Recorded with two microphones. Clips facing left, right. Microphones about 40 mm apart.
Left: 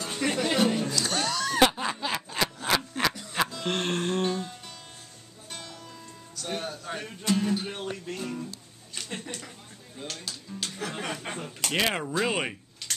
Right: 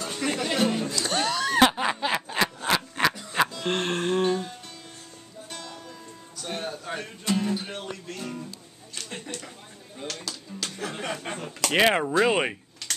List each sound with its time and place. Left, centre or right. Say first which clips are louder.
0.0 s music: even; centre
1.7 s snicker: right 4 dB; right
2.6 s a sound: even; centre
3.1 s music: right 4 dB; centre
6.3 s music: right 1 dB; centre
9.1 s a sound: right 1 dB; centre
10.0 s speech: right 3 dB; centre
10.8 s a sound: right 2 dB; centre
11.7 s speech: right 6 dB; right